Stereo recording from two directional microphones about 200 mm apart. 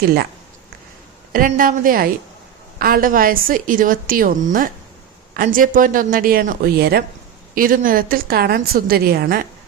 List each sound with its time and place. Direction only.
1.3 s a woman's voice: 45° right (ahead or behind)